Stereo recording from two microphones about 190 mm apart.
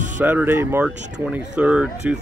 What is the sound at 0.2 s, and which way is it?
Speech, 10° right (ahead or behind).